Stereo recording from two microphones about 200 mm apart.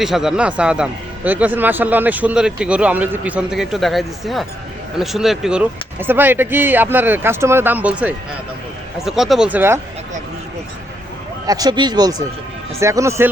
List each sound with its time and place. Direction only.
0.0 s a man's voice: centre (ahead or behind)
11.4 s speech: 20° right (ahead or behind)